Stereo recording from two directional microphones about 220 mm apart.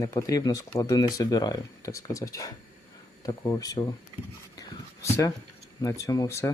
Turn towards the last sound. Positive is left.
turn(degrees=15)  # may be behind; listen again after turning